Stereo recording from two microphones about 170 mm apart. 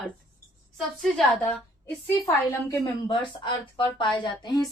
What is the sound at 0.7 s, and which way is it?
A woman's voice, centre (ahead or behind).